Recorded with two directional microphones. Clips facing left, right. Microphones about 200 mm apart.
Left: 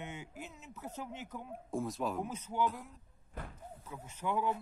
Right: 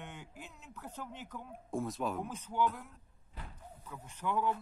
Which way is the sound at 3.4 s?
50° left (ahead or behind).